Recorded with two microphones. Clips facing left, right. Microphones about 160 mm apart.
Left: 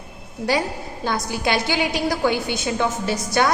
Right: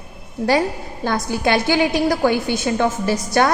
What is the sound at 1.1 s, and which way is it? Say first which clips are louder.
A woman's voice: right 4 dB; 50° right (ahead or behind).